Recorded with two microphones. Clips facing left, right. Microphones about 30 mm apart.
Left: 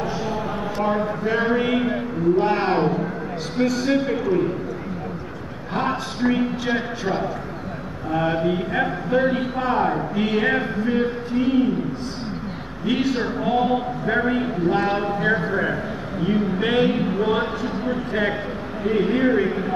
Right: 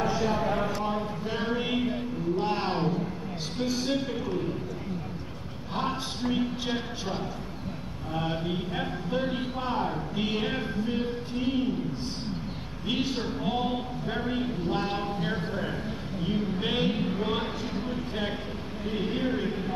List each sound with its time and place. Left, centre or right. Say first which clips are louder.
1.2 s a man's voice: left 11 dB; left
6.3 s a sound: left 7 dB; centre
8.1 s a man's voice: left 10 dB; left
9.7 s a man's voice: left 9 dB; left
10.1 s a man's voice: left 5 dB; centre
10.4 s a man's voice: left 9 dB; left
11.4 s a sound: left 8 dB; centre
12.9 s a sound: left 7 dB; centre
14.0 s a man's voice: left 11 dB; left
14.3 s a man's voice: left 8 dB; left
16.3 s a man's voice: left 8 dB; left
17.8 s a man's voice: left 12 dB; left
19.2 s a man's voice: left 10 dB; left